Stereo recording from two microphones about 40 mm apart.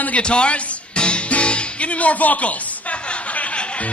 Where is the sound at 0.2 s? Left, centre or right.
Left.